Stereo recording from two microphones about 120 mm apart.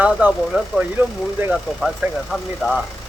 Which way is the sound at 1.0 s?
15° right (ahead or behind).